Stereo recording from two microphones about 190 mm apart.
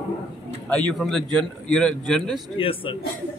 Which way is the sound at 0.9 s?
Centre (ahead or behind).